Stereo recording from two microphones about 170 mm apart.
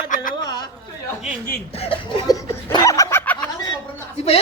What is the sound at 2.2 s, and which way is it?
Laughter, 25° left (ahead or behind).